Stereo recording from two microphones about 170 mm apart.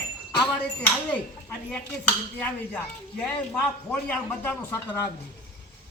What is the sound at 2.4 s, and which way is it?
Speech, 10° left (ahead or behind).